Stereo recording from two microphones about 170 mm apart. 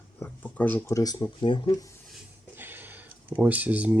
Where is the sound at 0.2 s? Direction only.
10° left (ahead or behind); by 1.9 s 25° left (ahead or behind).